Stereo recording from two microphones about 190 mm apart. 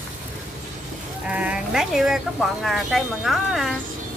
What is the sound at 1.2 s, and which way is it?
Speech, 5° right (ahead or behind).